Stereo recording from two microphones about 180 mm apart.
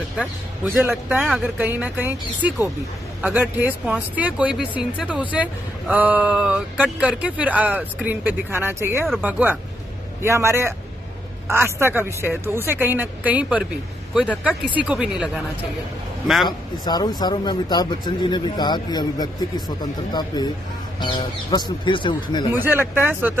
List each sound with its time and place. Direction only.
0.7 s speech: 10° right (ahead or behind)
14.9 s speech: 5° right (ahead or behind)
16.4 s speech: 20° left (ahead or behind)
22.5 s speech: 10° right (ahead or behind)